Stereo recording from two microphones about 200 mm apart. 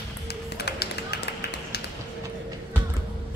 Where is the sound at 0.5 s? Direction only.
55° left (ahead or behind).